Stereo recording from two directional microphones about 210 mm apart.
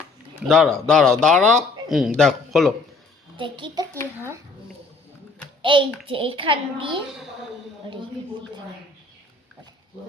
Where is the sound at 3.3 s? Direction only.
25° right (ahead or behind).